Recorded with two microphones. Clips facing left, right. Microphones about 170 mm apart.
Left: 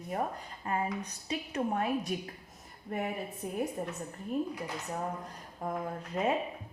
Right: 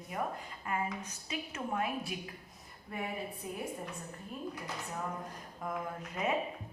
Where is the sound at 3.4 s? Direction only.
50° left (ahead or behind).